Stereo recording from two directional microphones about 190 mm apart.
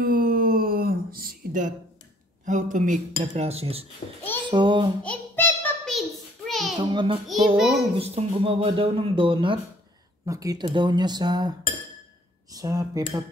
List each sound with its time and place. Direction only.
0.0 s a sound: 50° right (ahead or behind)
2.4 s speech: 40° right (ahead or behind)
4.0 s a child's voice: 40° left (ahead or behind)
4.5 s speech: 25° right (ahead or behind)
5.0 s child singing: 10° left (ahead or behind)
5.9 s a sound: centre (ahead or behind)
6.8 s speech: 25° right (ahead or behind)
7.5 s a child's voice: centre (ahead or behind)
7.9 s speech: 30° right (ahead or behind)
12.5 s speech: 20° right (ahead or behind)